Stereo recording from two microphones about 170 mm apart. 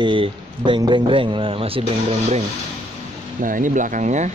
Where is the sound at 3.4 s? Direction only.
50° right (ahead or behind).